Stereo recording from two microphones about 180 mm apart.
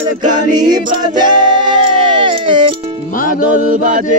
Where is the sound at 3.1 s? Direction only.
50° left (ahead or behind).